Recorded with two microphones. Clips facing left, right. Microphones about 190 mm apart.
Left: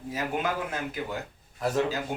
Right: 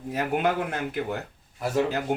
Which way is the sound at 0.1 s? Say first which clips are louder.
Right 5 dB; 60° right (ahead or behind).